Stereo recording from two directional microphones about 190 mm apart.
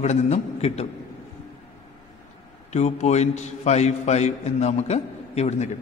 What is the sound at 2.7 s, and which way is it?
A man's voice, 35° left (ahead or behind).